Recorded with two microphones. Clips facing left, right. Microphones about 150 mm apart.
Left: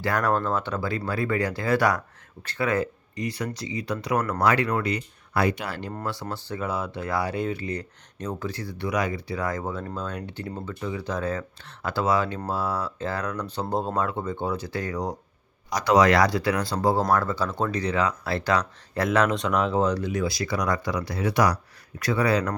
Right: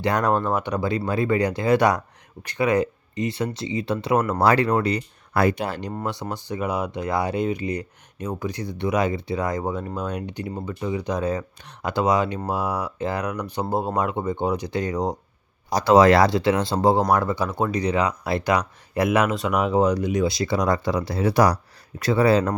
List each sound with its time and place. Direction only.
0.0 s speech: 20° right (ahead or behind)
5.3 s speech: 50° right (ahead or behind)
5.6 s speech: 20° right (ahead or behind)